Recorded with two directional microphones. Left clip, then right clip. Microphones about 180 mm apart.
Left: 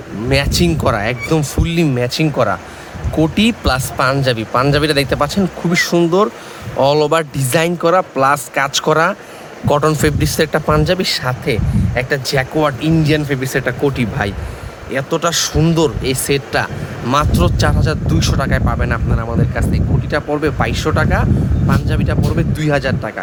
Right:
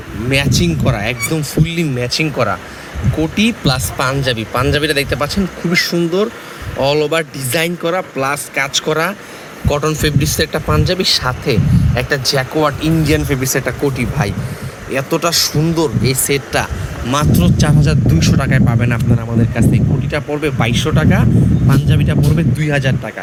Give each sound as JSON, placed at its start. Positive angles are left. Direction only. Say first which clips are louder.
{"t": 0.7, "sound": "speech", "louder": "left 2 dB", "side_deg": 30}
{"t": 3.2, "sound": "speech", "louder": "left 1 dB", "side_deg": 20}
{"t": 15.5, "sound": "speech", "louder": "left 1 dB", "side_deg": 20}